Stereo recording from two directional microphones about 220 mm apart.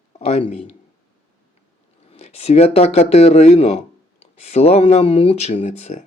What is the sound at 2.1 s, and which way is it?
Speech, 30° left (ahead or behind).